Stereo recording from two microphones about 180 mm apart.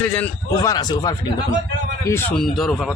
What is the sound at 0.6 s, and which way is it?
Speech, 20° left (ahead or behind).